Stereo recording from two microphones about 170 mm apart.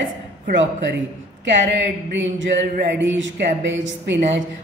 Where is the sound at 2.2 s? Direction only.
90° right.